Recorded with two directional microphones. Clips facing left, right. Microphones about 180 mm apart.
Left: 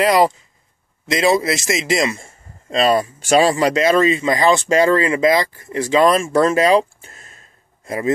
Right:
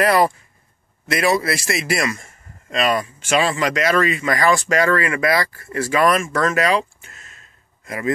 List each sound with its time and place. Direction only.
0.0 s a man's voice: 15° left (ahead or behind)